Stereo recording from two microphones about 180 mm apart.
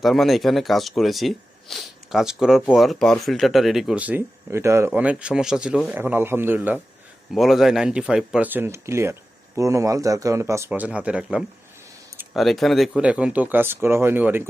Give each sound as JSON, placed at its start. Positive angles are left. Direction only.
{"t": 0.0, "sound": "speech", "side_deg": 0}
{"t": 7.3, "sound": "speech", "side_deg": 0}